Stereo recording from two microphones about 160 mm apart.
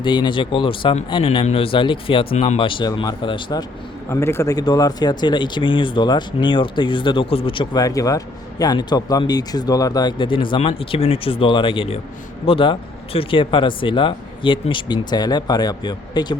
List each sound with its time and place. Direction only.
0.0 s speech: 30° left (ahead or behind)
4.1 s speech: 15° left (ahead or behind)